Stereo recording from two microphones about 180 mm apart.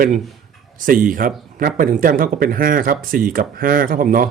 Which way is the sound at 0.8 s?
50° right (ahead or behind).